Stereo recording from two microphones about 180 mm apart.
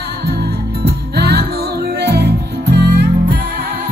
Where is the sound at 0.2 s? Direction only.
65° right (ahead or behind).